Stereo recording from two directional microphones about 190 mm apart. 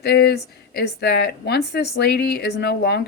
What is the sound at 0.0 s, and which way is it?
Speech, 60° left (ahead or behind).